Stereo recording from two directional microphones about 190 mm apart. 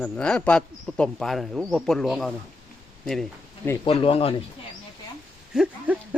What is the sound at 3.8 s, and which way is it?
Speech, 30° left (ahead or behind).